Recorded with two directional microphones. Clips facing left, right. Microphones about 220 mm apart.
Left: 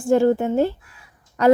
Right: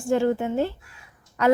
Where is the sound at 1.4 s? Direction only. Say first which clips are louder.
Left 4 dB; 35° left (ahead or behind).